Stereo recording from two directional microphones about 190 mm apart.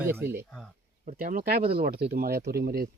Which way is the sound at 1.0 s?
45° right (ahead or behind).